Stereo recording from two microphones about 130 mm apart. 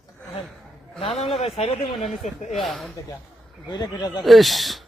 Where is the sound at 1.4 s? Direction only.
50° left (ahead or behind).